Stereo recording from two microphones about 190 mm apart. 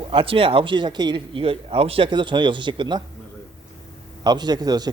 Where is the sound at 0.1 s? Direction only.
30° right (ahead or behind).